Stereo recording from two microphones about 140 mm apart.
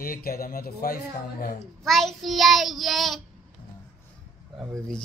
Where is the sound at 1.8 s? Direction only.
Centre (ahead or behind).